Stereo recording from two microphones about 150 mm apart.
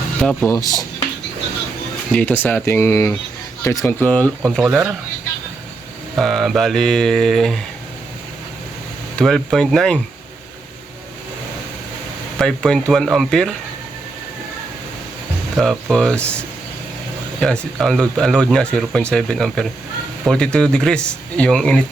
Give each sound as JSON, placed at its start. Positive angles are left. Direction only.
{"t": 0.2, "sound": "speech", "side_deg": 5}
{"t": 0.5, "sound": "speech", "side_deg": 25}
{"t": 2.1, "sound": "speech", "side_deg": 10}
{"t": 4.6, "sound": "speech", "side_deg": -5}
{"t": 6.1, "sound": "speech", "side_deg": 0}
{"t": 9.1, "sound": "speech", "side_deg": 0}
{"t": 12.4, "sound": "speech", "side_deg": 5}
{"t": 15.5, "sound": "speech", "side_deg": 5}
{"t": 17.4, "sound": "speech", "side_deg": 5}